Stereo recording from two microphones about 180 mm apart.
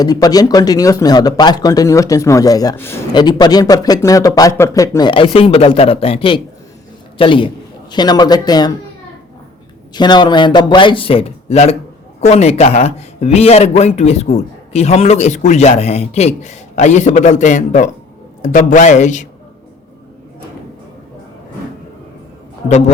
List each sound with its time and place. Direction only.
0.0 s speech: 20° left (ahead or behind)
3.1 s a man's voice: 25° left (ahead or behind)
9.9 s a man's voice: 25° left (ahead or behind); by 19.3 s 40° left (ahead or behind)